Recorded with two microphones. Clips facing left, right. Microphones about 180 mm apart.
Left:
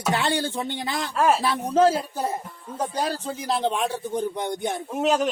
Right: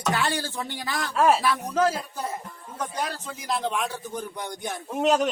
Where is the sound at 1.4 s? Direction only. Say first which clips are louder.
Left 4 dB; 30° left (ahead or behind).